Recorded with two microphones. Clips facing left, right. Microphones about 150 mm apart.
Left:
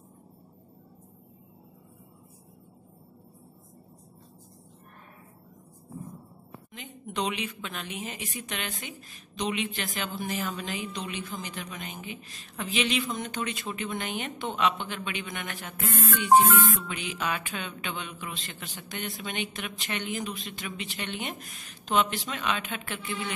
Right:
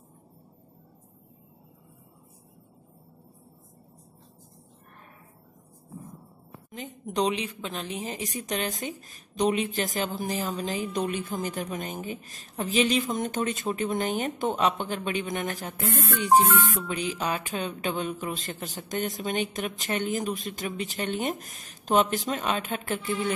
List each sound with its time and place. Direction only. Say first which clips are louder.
6.7 s a woman's voice: right 5 dB; 40° right (ahead or behind)